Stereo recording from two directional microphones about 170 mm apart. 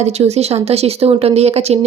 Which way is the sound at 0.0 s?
40° right (ahead or behind).